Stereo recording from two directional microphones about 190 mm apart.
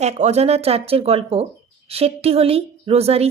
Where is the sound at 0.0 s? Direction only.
35° right (ahead or behind).